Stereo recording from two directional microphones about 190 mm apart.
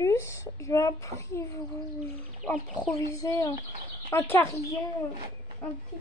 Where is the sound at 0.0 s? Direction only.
15° left (ahead or behind).